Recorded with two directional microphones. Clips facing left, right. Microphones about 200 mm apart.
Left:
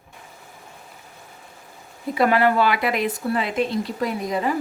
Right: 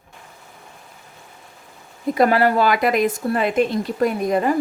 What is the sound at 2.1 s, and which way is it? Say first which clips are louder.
Speech: right 2 dB; 40° right (ahead or behind).